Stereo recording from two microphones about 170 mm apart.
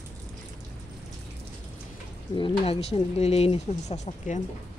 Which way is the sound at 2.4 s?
35° left (ahead or behind).